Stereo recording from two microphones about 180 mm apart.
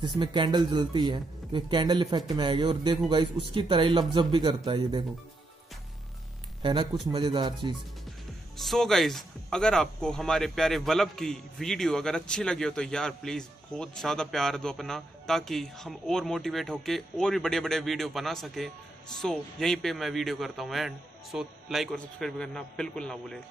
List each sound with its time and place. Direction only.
0.2 s speech: 25° right (ahead or behind)
6.6 s speech: 25° right (ahead or behind)
8.5 s speech: centre (ahead or behind)